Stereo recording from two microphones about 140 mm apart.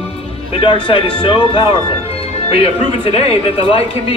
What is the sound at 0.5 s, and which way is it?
A man's voice, 40° left (ahead or behind).